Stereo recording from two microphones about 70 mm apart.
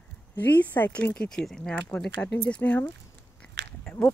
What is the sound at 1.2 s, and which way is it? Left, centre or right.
Speech, centre.